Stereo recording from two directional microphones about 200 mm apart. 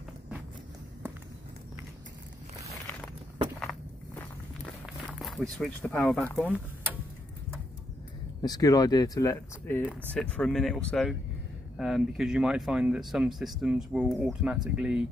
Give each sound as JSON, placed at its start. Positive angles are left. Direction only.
{"t": 3.5, "sound": "walk", "side_deg": 10}
{"t": 4.8, "sound": "speech", "side_deg": 0}
{"t": 8.4, "sound": "speech", "side_deg": 20}
{"t": 9.8, "sound": "speech", "side_deg": 5}